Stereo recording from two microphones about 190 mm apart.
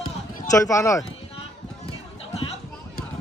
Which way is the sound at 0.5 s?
15° left (ahead or behind).